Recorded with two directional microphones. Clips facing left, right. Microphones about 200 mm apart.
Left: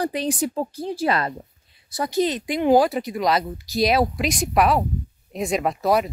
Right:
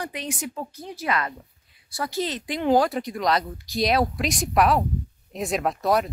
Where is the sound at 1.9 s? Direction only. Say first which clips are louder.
Left 6 dB; 20° left (ahead or behind).